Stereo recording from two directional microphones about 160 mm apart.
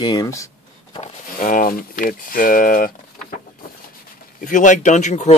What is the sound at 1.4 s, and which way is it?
Speech, 60° left (ahead or behind).